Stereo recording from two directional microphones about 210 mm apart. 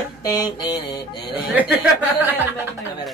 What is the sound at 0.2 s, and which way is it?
Speech, 15° left (ahead or behind).